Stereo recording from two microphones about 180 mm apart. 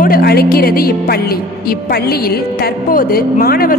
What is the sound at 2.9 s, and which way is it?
Speech, 55° left (ahead or behind).